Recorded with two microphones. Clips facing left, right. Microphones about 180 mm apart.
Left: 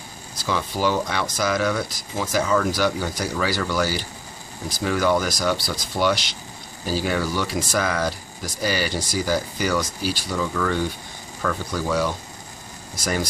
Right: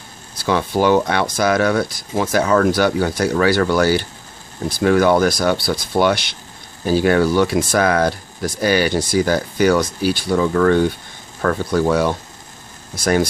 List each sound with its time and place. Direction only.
0.5 s speech: 60° right (ahead or behind)